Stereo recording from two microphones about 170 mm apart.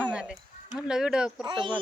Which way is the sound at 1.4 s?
30° right (ahead or behind).